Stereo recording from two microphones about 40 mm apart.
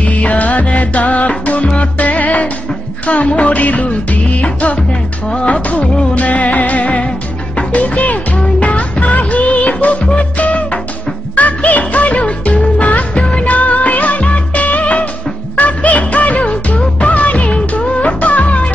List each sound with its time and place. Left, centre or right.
0.0 s music: left
3.1 s music of bollywood: left
7.5 s music: left
13.4 s music of bollywood: left
15.5 s music: left